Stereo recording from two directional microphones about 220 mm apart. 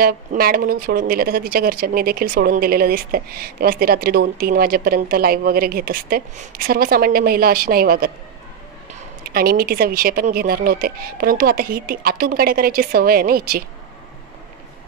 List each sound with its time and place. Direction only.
0.0 s speech: 40° right (ahead or behind)
9.2 s speech: 45° right (ahead or behind)